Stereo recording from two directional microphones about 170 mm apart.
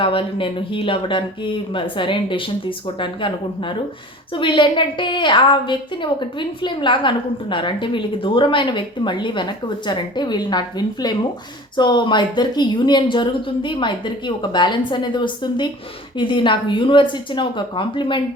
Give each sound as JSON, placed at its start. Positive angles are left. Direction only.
{"t": 0.0, "sound": "a woman's voice", "side_deg": 30}